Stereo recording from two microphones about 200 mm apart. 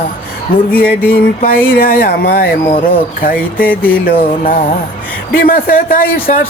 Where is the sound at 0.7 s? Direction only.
10° left (ahead or behind).